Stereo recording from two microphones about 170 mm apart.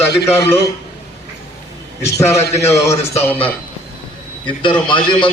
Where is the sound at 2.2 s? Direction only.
15° left (ahead or behind).